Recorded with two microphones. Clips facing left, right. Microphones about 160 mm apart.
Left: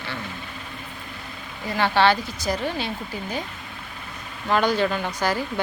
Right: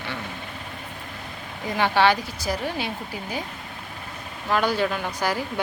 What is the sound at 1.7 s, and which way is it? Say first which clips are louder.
A woman's voice: even; 15° right (ahead or behind).